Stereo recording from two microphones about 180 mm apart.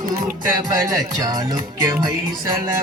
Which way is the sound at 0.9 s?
20° right (ahead or behind).